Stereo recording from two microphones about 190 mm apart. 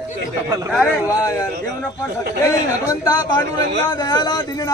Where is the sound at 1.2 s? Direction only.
20° left (ahead or behind).